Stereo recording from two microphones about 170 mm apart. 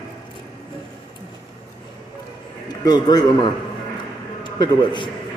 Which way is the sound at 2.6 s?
25° left (ahead or behind).